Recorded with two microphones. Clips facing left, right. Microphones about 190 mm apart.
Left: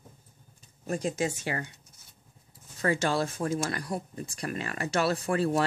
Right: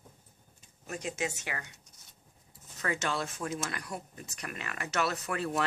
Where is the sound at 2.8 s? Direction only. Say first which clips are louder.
Left 6 dB; 35° left (ahead or behind).